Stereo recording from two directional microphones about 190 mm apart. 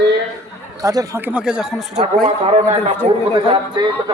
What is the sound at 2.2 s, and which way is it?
A man's voice, 30° right (ahead or behind).